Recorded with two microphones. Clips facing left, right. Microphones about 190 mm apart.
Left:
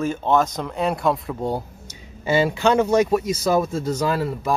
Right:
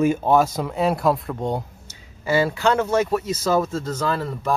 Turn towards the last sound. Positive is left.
turn(degrees=10)  # may be behind; listen again after turning